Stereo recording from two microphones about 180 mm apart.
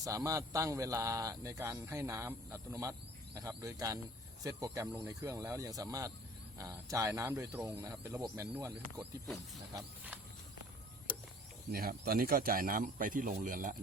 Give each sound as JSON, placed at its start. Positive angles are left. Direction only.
{"t": 0.0, "sound": "a man's voice", "side_deg": -20}
{"t": 9.0, "sound": "speech", "side_deg": 0}
{"t": 11.7, "sound": "speech", "side_deg": -55}